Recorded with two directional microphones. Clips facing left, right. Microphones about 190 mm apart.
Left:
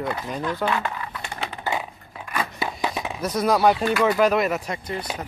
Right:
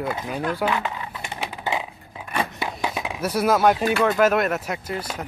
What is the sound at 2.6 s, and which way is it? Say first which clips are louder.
Chop: even; centre (ahead or behind).